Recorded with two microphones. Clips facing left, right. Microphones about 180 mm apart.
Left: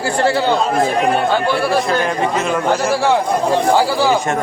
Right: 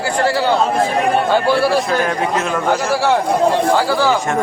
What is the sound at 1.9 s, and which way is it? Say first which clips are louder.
Speech: even; centre (ahead or behind).